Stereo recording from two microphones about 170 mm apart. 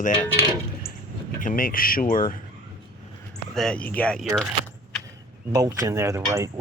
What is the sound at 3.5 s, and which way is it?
Speech, 5° left (ahead or behind).